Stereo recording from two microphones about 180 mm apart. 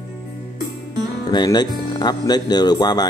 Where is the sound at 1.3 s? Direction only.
25° left (ahead or behind).